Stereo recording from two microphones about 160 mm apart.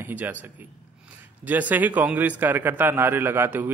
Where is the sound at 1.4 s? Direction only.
10° right (ahead or behind).